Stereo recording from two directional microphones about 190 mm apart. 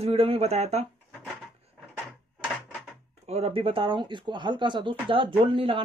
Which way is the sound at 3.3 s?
30° right (ahead or behind).